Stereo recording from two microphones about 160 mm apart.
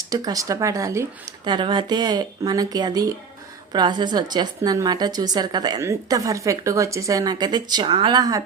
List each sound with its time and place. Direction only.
0.1 s a woman's voice: 20° right (ahead or behind)